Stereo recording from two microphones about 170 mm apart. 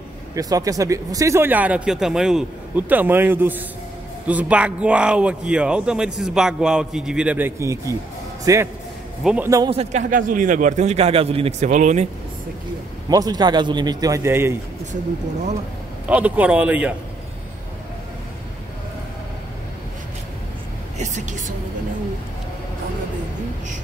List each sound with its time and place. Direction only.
0.4 s a man's voice: 20° right (ahead or behind)
9.2 s a man's voice: 5° right (ahead or behind)
9.7 s speech: 35° right (ahead or behind)
10.0 s a man's voice: 50° right (ahead or behind)
13.1 s a man's voice: 20° right (ahead or behind)
16.1 s speech: 10° right (ahead or behind)
21.0 s a man's voice: 45° right (ahead or behind)